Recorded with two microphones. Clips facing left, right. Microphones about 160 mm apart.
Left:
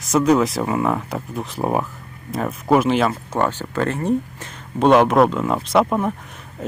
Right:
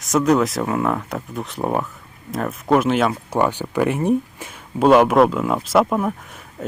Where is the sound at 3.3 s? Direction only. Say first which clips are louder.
Right 2 dB; 10° right (ahead or behind).